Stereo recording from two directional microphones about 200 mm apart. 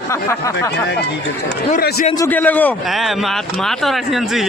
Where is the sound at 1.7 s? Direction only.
50° left (ahead or behind).